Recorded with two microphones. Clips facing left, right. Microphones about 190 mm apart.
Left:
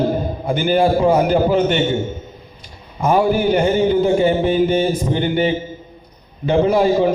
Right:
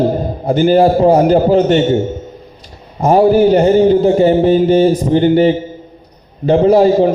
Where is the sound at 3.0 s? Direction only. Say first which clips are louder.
Right 7 dB; 35° right (ahead or behind).